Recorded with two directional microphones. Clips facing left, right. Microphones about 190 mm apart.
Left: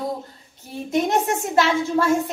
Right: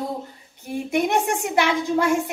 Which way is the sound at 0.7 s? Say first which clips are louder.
Even; 15° right (ahead or behind).